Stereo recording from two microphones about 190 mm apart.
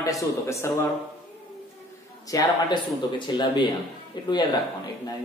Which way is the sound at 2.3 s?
25° left (ahead or behind).